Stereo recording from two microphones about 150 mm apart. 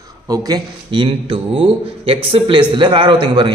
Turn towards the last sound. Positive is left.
turn(degrees=-30)  # may be behind; listen again after turning